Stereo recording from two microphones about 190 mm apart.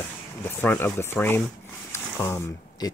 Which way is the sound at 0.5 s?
10° left (ahead or behind).